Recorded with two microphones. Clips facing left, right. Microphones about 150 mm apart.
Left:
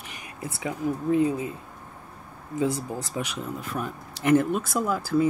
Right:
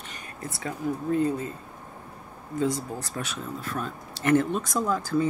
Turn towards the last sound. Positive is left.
turn(degrees=10)  # may be behind; listen again after turning